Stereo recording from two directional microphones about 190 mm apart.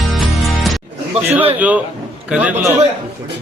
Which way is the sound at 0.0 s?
Centre (ahead or behind).